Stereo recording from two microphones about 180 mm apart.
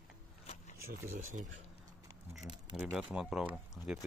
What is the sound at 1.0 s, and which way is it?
Speech, 45° right (ahead or behind).